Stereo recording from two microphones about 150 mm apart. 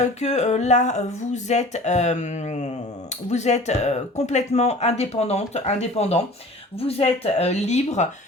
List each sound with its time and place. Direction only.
0.0 s speech: 50° left (ahead or behind)